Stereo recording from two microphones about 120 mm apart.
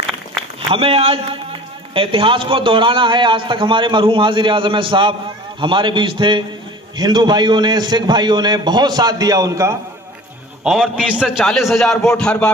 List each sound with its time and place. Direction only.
0.7 s a man's voice: 55° right (ahead or behind); by 9.8 s 30° right (ahead or behind)
10.6 s a man's voice: centre (ahead or behind)